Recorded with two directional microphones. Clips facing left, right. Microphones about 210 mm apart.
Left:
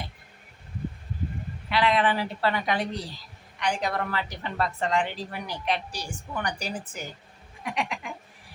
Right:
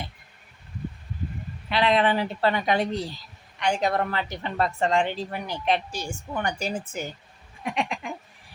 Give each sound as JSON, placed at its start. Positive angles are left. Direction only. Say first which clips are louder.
{"t": 1.7, "sound": "a woman's voice", "louder": "right 2 dB", "side_deg": -25}
{"t": 7.6, "sound": "goat", "louder": "right 3 dB", "side_deg": -25}